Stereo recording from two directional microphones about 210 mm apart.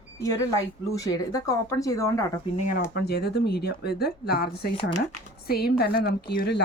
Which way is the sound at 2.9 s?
50° left (ahead or behind).